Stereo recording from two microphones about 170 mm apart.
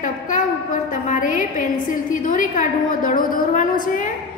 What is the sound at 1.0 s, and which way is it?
A woman's voice, 50° left (ahead or behind).